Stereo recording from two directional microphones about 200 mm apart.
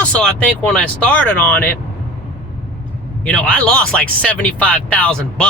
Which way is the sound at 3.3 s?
5° left (ahead or behind).